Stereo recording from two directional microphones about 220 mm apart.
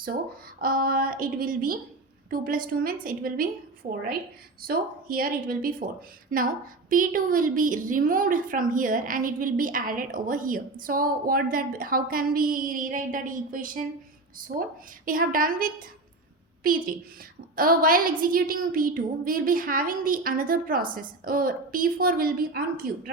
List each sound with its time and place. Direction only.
0.6 s a woman's voice: 40° right (ahead or behind)
17.5 s a woman's voice: 40° right (ahead or behind)